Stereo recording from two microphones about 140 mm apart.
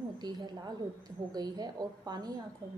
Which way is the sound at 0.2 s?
30° right (ahead or behind).